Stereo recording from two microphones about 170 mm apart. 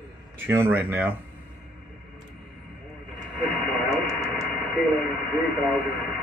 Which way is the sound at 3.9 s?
45° right (ahead or behind).